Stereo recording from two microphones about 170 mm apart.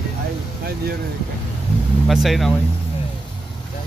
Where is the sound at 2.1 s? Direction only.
Centre (ahead or behind).